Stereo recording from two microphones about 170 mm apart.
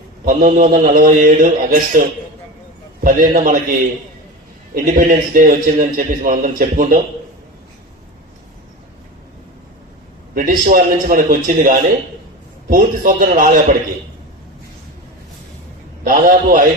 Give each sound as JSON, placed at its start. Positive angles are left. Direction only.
{"t": 0.3, "sound": "a man's voice", "side_deg": -55}
{"t": 3.0, "sound": "a man's voice", "side_deg": -55}
{"t": 4.7, "sound": "a man's voice", "side_deg": -55}
{"t": 10.3, "sound": "a man's voice", "side_deg": -55}
{"t": 16.0, "sound": "a man's voice", "side_deg": -50}